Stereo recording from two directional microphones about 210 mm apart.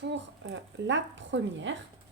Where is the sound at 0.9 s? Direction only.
60° right (ahead or behind).